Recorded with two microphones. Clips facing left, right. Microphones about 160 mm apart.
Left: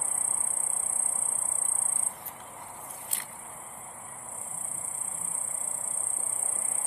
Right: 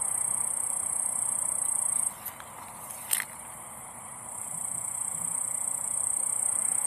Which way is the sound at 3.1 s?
75° right (ahead or behind).